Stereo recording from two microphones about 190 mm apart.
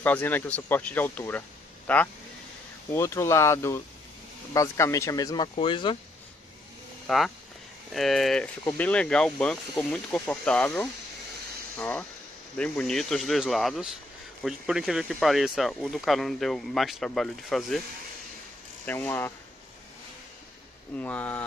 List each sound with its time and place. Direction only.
0.0 s speech: 10° left (ahead or behind); by 5.9 s 25° left (ahead or behind)
7.1 s speech: centre (ahead or behind)
18.9 s speech: 10° left (ahead or behind)
21.0 s speech: 10° left (ahead or behind)